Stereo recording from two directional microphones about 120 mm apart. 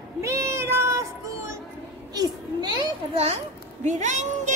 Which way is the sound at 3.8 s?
85° right.